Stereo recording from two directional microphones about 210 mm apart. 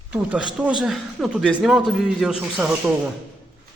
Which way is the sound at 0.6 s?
5° right (ahead or behind).